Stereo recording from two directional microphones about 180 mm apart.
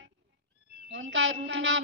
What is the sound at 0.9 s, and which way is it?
Speech, 90° right.